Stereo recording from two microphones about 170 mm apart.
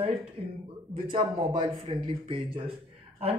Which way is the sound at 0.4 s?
35° right (ahead or behind).